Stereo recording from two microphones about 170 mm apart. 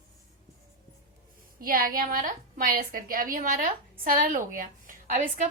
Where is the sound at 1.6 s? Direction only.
55° right (ahead or behind).